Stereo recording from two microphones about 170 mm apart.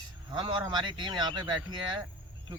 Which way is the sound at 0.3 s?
25° right (ahead or behind).